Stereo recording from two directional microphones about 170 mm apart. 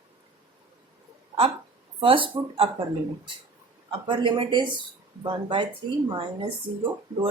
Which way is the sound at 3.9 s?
30° right (ahead or behind).